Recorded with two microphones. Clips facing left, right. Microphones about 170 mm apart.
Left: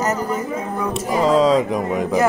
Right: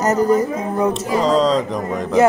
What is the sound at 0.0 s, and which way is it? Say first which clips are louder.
Speech: right 6 dB; 40° right (ahead or behind).